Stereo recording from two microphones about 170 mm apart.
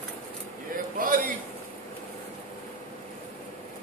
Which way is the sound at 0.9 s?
55° right (ahead or behind).